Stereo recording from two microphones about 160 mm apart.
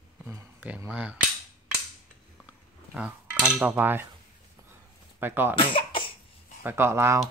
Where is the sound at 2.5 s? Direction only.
10° right (ahead or behind).